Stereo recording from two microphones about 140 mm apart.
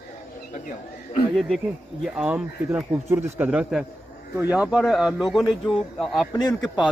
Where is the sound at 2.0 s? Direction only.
5° right (ahead or behind).